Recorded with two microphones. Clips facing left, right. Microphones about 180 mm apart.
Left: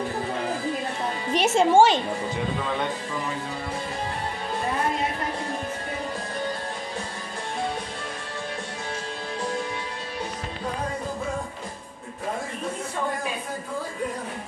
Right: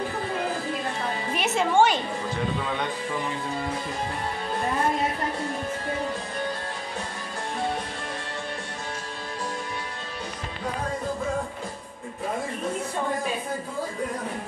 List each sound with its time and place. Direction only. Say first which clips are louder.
1.3 s a woman's voice: left 5 dB; 30° left (ahead or behind)